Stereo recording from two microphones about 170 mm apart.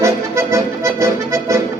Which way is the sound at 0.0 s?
15° right (ahead or behind).